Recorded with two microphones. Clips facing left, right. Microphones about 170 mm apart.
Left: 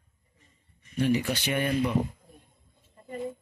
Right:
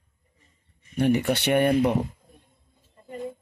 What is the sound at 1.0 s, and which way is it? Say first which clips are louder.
Speech: right 4 dB; 60° right (ahead or behind).